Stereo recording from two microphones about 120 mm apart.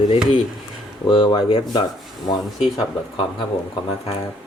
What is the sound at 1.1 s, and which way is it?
Speech, 40° left (ahead or behind).